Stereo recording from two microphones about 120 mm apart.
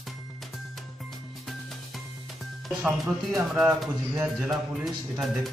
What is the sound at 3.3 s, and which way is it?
Speech, 5° right (ahead or behind).